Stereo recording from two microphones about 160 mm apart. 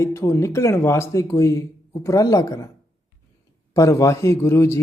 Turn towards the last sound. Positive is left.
turn(degrees=15)  # may be behind; listen again after turning